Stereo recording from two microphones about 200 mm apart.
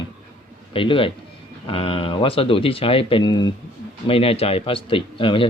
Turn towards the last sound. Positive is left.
turn(degrees=25)  # may be behind; listen again after turning